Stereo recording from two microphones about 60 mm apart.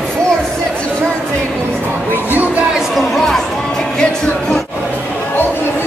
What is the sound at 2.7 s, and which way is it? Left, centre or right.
Speech, centre.